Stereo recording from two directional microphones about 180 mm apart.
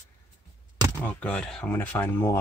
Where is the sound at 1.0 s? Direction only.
5° left (ahead or behind).